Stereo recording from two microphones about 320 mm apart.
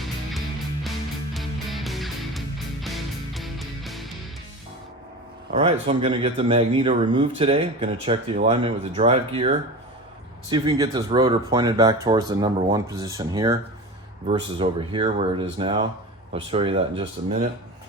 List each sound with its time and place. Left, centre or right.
0.0 s music: centre
5.5 s a man's voice: centre